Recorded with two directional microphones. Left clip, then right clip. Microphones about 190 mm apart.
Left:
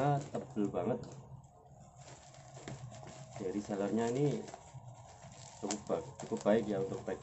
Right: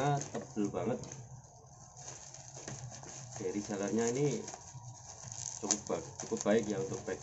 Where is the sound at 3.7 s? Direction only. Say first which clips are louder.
Even; 15° left (ahead or behind).